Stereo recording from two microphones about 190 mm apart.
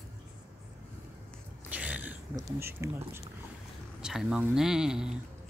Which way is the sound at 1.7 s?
10° right (ahead or behind).